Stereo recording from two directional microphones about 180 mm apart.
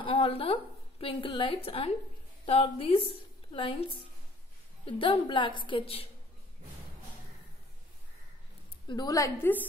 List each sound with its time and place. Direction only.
0.0 s a woman's voice: 30° left (ahead or behind)
4.8 s a woman's voice: 30° left (ahead or behind)
8.8 s a woman's voice: 20° left (ahead or behind)